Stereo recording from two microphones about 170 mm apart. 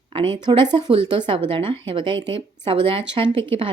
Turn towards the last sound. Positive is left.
turn(degrees=-30)  # may be behind; listen again after turning